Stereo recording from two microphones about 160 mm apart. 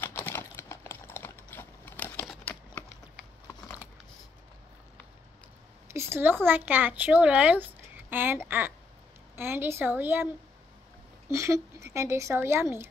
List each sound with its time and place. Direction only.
0.0 s typing: 15° left (ahead or behind)
5.9 s a woman's voice: 15° right (ahead or behind)